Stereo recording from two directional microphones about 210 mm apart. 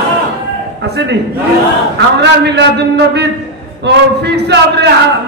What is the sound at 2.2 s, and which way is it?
A man's voice, 55° right (ahead or behind).